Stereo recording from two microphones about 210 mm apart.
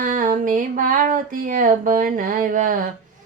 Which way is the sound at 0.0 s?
40° right (ahead or behind).